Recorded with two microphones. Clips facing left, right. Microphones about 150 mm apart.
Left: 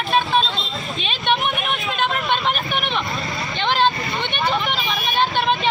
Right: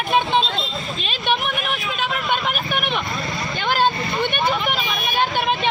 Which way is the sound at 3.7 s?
10° right (ahead or behind).